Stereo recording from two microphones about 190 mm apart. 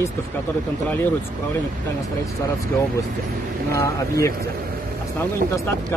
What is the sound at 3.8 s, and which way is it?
Speech, 15° left (ahead or behind).